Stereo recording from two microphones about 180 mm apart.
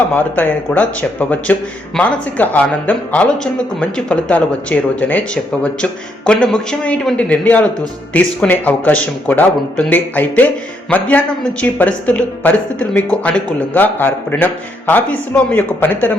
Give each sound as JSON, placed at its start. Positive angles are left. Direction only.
{"t": 0.1, "sound": "speech", "side_deg": 10}